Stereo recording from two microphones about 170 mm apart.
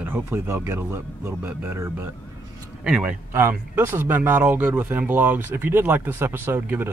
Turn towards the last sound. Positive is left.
turn(degrees=-10)  # may be behind; listen again after turning